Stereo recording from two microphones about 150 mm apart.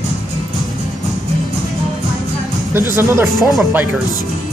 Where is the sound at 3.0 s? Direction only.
15° right (ahead or behind).